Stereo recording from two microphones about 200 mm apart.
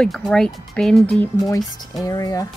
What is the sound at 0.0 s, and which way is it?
Speech, 5° left (ahead or behind).